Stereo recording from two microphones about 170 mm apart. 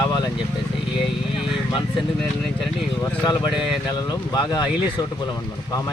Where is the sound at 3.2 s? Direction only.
25° left (ahead or behind).